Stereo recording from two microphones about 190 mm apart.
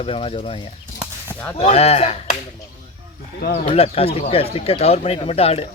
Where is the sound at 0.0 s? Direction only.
30° left (ahead or behind).